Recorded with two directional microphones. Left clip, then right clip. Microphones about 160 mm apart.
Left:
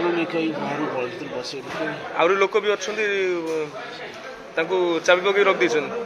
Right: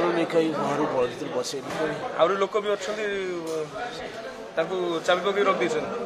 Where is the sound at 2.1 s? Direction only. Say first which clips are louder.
Left 4 dB; 20° left (ahead or behind).